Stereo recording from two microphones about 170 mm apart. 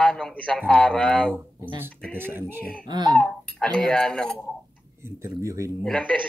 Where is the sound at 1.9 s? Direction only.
10° left (ahead or behind).